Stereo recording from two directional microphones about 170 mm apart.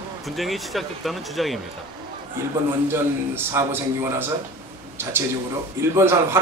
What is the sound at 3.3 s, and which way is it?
A man's voice, 15° right (ahead or behind).